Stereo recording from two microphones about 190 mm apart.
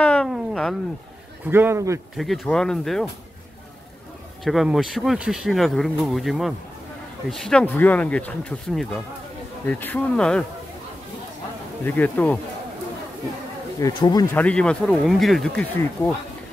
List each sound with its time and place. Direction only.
0.0 s a sound: 5° left (ahead or behind)
1.5 s a man's voice: 10° right (ahead or behind)
2.1 s speech: centre (ahead or behind)
4.5 s speech: centre (ahead or behind)
11.8 s speech: 10° left (ahead or behind)
13.7 s speech: 20° left (ahead or behind)
14.3 s speech: 5° left (ahead or behind)